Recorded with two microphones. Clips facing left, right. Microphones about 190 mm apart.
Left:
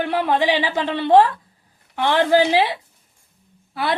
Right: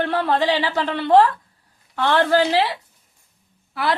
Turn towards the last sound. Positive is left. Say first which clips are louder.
# even
turn(degrees=25)  # may be behind; listen again after turning